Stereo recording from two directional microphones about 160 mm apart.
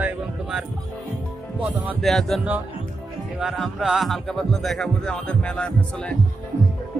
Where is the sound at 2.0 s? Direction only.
Centre (ahead or behind).